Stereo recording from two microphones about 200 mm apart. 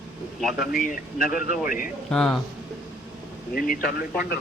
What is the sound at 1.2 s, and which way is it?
Speech, 45° left (ahead or behind).